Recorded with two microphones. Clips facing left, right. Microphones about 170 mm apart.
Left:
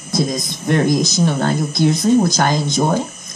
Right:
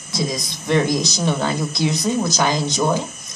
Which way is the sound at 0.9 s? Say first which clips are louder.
Left 4 dB; 50° left (ahead or behind).